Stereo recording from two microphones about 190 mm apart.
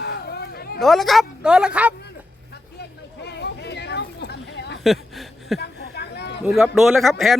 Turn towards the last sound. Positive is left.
turn(degrees=0)  # may be behind; listen again after turning